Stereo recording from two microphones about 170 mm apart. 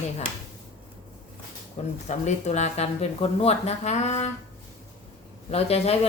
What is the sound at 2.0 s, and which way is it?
Speech, 45° left (ahead or behind).